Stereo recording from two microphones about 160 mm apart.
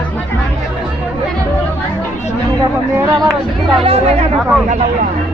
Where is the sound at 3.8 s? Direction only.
40° right (ahead or behind).